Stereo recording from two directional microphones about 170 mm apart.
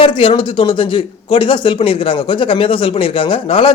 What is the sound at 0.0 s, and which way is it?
A man's voice, 30° left (ahead or behind).